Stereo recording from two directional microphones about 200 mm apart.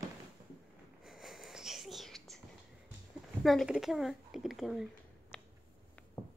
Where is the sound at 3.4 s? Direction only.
Centre (ahead or behind).